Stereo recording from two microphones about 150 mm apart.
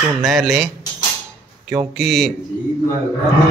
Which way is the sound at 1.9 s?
Centre (ahead or behind).